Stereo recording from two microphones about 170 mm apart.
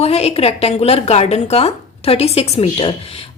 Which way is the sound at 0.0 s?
35° left (ahead or behind).